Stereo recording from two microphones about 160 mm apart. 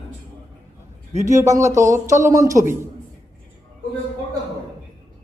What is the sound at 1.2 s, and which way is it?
A man's voice, 20° right (ahead or behind).